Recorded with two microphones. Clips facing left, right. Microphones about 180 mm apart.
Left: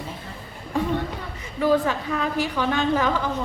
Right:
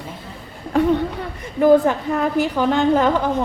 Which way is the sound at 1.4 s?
50° right (ahead or behind).